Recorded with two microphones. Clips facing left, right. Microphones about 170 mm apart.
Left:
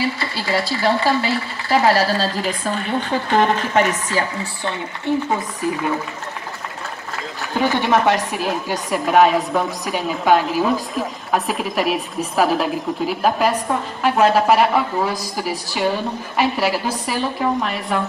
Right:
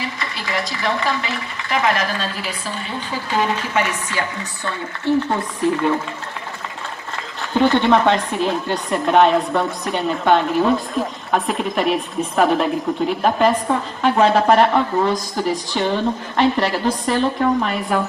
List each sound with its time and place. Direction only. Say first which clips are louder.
0.0 s a woman's voice: left 5 dB; 30° left (ahead or behind)
5.3 s a woman's voice: right 2 dB; 5° left (ahead or behind)
7.5 s a woman's voice: right 3 dB; 10° left (ahead or behind)